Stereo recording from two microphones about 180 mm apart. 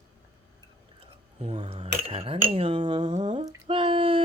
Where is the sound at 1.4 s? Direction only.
30° right (ahead or behind).